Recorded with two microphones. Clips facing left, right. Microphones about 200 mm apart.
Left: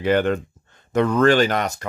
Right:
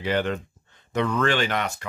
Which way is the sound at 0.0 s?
50° left (ahead or behind).